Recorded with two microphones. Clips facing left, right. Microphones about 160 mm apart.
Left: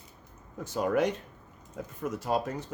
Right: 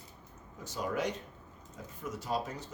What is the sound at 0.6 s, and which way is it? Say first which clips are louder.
Speech: left 7 dB; 55° left (ahead or behind).